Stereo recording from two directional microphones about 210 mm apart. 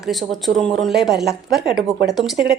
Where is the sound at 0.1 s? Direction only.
Centre (ahead or behind).